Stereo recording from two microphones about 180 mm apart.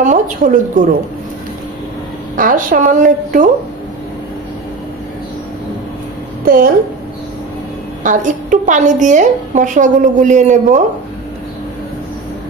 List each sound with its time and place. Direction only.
0.0 s a woman's voice: 45° right (ahead or behind)
2.3 s a woman's voice: 50° right (ahead or behind)
6.4 s a woman's voice: 55° right (ahead or behind)
8.0 s a woman's voice: 45° right (ahead or behind)